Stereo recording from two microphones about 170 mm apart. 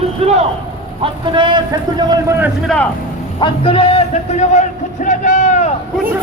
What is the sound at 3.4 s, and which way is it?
Speech, 35° left (ahead or behind).